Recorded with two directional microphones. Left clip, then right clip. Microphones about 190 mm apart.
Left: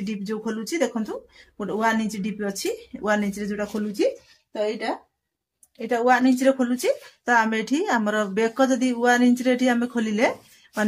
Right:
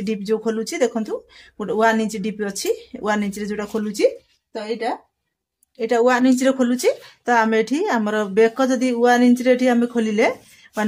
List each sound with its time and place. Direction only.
0.0 s a woman's voice: 35° right (ahead or behind)